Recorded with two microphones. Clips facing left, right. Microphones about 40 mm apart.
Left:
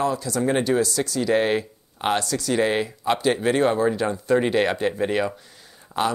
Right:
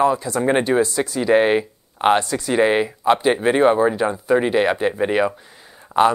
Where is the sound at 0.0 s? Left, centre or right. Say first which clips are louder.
Right 5 dB; right.